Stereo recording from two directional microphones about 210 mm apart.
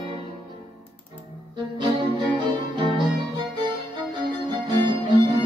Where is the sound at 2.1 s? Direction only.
20° right (ahead or behind).